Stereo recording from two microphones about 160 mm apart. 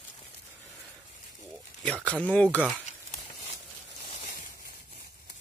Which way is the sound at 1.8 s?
10° left (ahead or behind).